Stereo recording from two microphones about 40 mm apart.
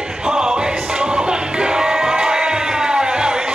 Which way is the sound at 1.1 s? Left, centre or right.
Centre.